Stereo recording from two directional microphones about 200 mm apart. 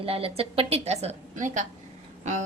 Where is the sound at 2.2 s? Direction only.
35° right (ahead or behind).